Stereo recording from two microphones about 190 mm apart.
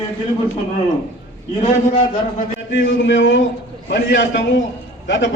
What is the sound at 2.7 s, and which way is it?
Speech, 75° left (ahead or behind).